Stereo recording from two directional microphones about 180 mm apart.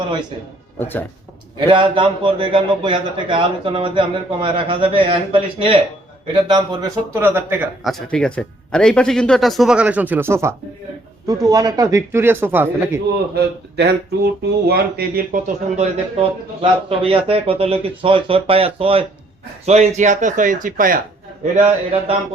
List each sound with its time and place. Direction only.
0.8 s speech: 10° left (ahead or behind)
1.5 s a man's voice: 25° right (ahead or behind); by 7.7 s 10° right (ahead or behind)
7.9 s speech: 5° left (ahead or behind); by 13.0 s 10° right (ahead or behind)
13.3 s a man's voice: 60° right (ahead or behind)
21.5 s speech: 35° right (ahead or behind)